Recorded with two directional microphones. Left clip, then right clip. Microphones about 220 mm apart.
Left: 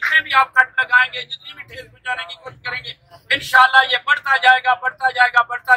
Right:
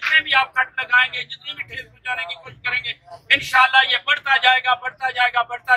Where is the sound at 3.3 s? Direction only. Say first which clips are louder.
Left 2 dB; centre (ahead or behind).